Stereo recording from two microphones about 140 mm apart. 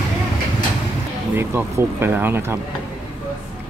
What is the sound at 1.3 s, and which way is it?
Speech, 15° right (ahead or behind).